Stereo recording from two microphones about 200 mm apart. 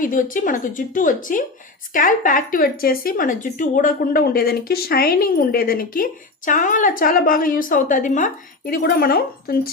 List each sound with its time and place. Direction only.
0.0 s speech: 40° left (ahead or behind)